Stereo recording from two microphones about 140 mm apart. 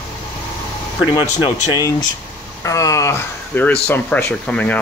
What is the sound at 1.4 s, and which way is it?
Speech, 35° left (ahead or behind).